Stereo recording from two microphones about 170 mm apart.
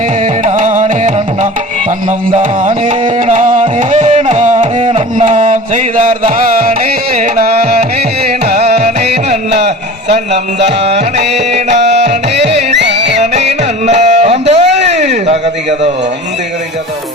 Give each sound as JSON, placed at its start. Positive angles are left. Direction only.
{"t": 0.4, "sound": "music", "side_deg": -45}
{"t": 5.1, "sound": "music", "side_deg": -45}
{"t": 8.4, "sound": "music", "side_deg": -40}
{"t": 9.6, "sound": "a sound", "side_deg": -40}
{"t": 10.7, "sound": "music", "side_deg": -40}
{"t": 12.8, "sound": "music", "side_deg": -90}
{"t": 13.1, "sound": "music", "side_deg": -40}
{"t": 14.9, "sound": "a sound", "side_deg": -45}